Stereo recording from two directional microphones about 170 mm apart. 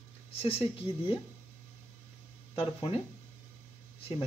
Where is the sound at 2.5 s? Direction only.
35° left (ahead or behind).